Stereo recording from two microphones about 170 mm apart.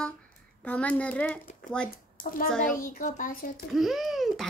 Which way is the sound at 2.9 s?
50° left (ahead or behind).